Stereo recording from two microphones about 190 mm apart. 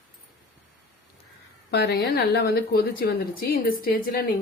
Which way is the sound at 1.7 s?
60° left (ahead or behind).